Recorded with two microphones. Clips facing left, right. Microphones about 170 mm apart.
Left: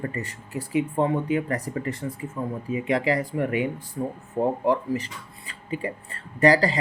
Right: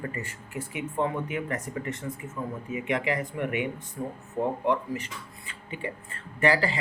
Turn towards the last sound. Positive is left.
turn(degrees=40)  # may be behind; listen again after turning